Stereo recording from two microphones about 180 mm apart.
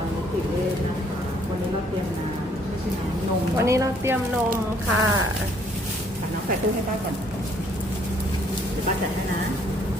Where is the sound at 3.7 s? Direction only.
15° right (ahead or behind).